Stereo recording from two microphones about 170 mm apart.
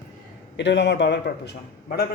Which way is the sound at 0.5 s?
90° left.